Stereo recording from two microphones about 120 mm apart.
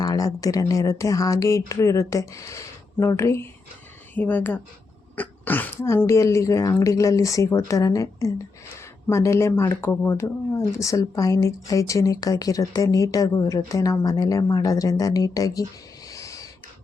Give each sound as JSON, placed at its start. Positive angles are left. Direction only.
{"t": 0.0, "sound": "speech", "side_deg": 30}
{"t": 16.0, "sound": "owl", "side_deg": 30}